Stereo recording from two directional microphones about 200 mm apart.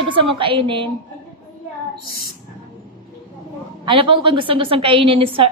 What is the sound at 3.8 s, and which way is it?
A child's voice, 25° right (ahead or behind).